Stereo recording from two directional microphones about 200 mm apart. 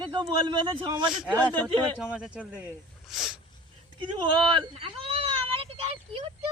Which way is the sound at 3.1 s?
Centre (ahead or behind).